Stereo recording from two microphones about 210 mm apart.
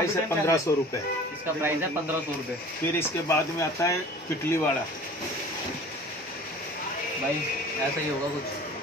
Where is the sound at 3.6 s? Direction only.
15° left (ahead or behind).